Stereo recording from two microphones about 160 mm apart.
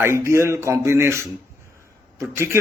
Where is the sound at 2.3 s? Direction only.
15° right (ahead or behind).